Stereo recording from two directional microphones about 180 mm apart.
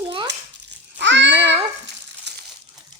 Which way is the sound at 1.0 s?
80° right.